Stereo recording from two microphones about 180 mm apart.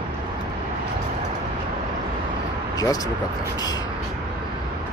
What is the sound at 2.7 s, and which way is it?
Speech, 20° left (ahead or behind).